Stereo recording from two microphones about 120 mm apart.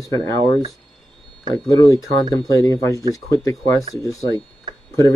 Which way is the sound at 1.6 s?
25° left (ahead or behind).